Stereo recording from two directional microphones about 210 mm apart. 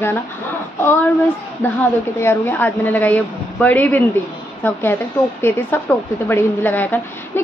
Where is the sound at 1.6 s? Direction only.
10° left (ahead or behind).